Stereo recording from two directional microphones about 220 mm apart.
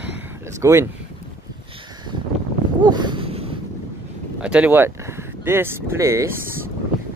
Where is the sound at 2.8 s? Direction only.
20° right (ahead or behind).